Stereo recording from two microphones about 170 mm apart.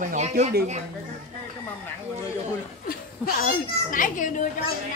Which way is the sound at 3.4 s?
50° left (ahead or behind).